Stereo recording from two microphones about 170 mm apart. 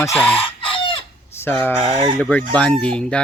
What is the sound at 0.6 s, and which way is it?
Chicken, 30° left (ahead or behind).